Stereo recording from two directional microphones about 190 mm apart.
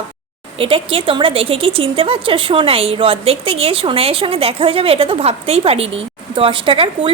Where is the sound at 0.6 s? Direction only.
30° right (ahead or behind).